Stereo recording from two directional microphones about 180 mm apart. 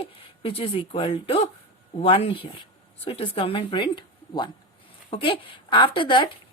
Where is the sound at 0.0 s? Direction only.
30° left (ahead or behind).